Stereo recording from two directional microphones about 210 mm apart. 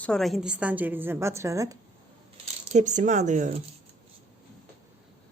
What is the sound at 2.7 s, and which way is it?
Speech, 35° right (ahead or behind).